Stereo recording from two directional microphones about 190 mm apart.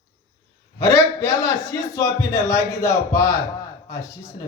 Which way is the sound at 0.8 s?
15° left (ahead or behind).